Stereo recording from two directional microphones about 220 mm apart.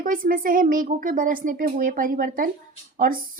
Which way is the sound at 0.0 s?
40° right (ahead or behind).